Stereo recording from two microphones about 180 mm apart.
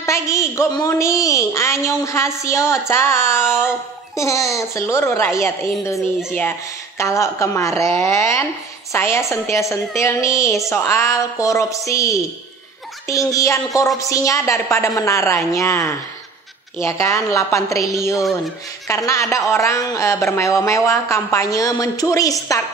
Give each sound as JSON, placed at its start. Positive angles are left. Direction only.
{"t": 0.0, "sound": "a woman's voice", "side_deg": 15}